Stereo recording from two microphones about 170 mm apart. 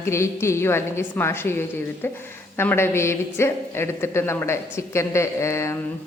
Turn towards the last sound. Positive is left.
turn(degrees=15)  # may be behind; listen again after turning